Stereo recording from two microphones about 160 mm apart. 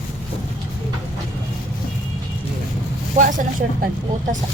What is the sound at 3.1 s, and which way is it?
Speech, 55° right (ahead or behind).